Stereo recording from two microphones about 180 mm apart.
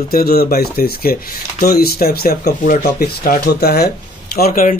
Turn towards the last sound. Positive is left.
turn(degrees=50)  # may be behind; listen again after turning